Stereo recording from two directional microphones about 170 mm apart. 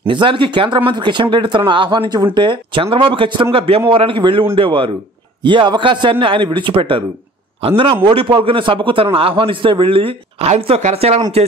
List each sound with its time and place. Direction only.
0.0 s a man's voice: 30° right (ahead or behind)